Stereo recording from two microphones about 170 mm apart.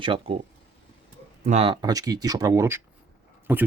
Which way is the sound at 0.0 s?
30° right (ahead or behind).